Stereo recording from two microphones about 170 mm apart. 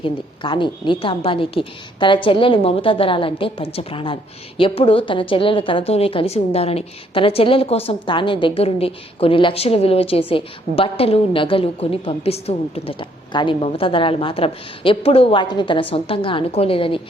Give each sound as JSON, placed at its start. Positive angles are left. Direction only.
{"t": 0.0, "sound": "a woman's voice", "side_deg": 30}